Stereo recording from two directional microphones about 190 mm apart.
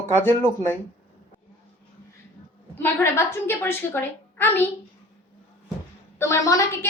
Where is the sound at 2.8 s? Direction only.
15° left (ahead or behind).